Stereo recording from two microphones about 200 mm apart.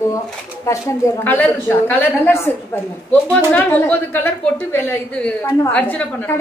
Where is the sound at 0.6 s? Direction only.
15° left (ahead or behind).